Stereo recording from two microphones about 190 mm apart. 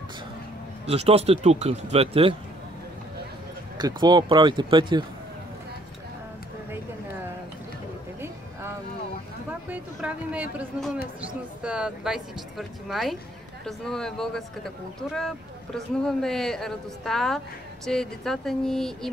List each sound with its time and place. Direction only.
0.8 s speech: 30° right (ahead or behind)
3.7 s speech: 20° right (ahead or behind)
9.5 s speech: 10° right (ahead or behind)